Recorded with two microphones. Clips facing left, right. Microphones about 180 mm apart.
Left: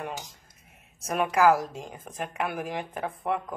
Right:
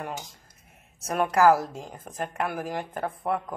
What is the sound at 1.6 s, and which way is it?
A woman's voice, 15° left (ahead or behind).